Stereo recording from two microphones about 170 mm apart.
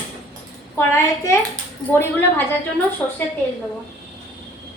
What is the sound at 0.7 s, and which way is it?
Speech, 15° left (ahead or behind).